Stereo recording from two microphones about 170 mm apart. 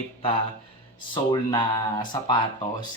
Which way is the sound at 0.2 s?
30° left (ahead or behind).